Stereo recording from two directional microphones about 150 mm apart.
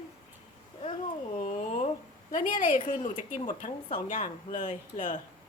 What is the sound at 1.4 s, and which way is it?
Speech, 50° left (ahead or behind).